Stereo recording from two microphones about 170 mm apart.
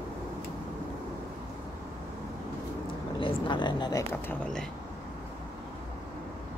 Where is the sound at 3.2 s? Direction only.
30° left (ahead or behind).